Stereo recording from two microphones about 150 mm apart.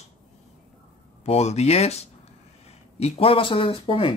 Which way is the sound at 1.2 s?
45° left (ahead or behind).